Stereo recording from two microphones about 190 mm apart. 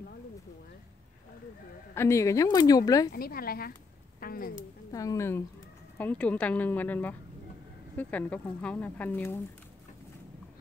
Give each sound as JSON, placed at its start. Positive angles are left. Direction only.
{"t": 2.0, "sound": "speech", "side_deg": 15}
{"t": 3.1, "sound": "a woman's voice", "side_deg": 50}
{"t": 4.2, "sound": "a sound", "side_deg": 50}
{"t": 4.9, "sound": "speech", "side_deg": 15}